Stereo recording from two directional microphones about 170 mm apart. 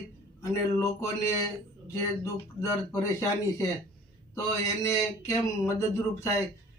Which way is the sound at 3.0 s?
20° left (ahead or behind).